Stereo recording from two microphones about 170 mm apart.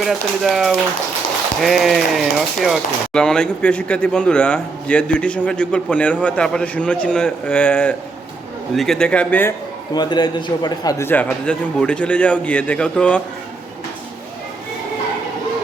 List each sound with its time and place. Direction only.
0.0 s a man's voice: centre (ahead or behind)
9.9 s a man's voice: 25° left (ahead or behind); by 13.2 s 5° left (ahead or behind)